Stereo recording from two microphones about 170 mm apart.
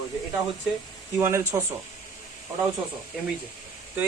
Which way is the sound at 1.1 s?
15° right (ahead or behind).